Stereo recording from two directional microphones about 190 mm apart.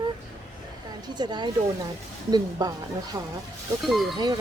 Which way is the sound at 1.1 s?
20° right (ahead or behind).